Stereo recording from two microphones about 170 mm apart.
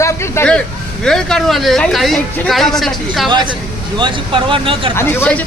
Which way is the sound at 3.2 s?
25° right (ahead or behind).